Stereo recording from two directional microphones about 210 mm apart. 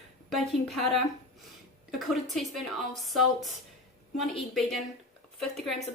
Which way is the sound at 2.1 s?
Centre (ahead or behind).